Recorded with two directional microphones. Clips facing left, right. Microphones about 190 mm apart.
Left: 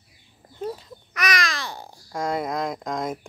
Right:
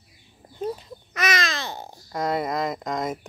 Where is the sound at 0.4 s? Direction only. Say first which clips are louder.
Right 2 dB; 20° right (ahead or behind).